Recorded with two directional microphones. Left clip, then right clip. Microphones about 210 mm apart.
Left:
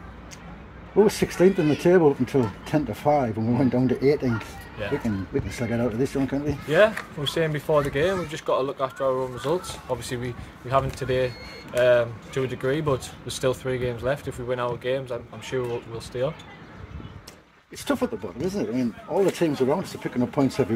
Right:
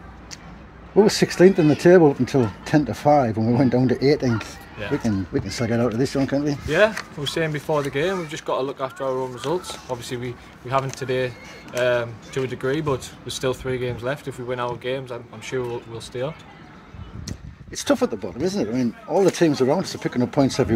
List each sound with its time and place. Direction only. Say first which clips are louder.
0.9 s speech: right 3 dB; 55° right (ahead or behind)
7.2 s speech: even; 5° right (ahead or behind)
17.3 s speech: right 7 dB; 55° right (ahead or behind)